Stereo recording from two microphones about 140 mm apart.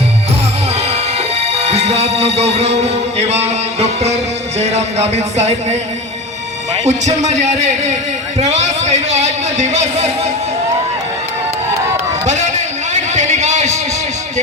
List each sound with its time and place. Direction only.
1.6 s music: 50° right (ahead or behind)
6.8 s a man's voice: 55° right (ahead or behind)
12.3 s a sound: 55° right (ahead or behind)